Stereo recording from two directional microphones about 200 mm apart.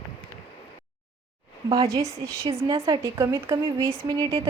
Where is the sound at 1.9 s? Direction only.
15° right (ahead or behind).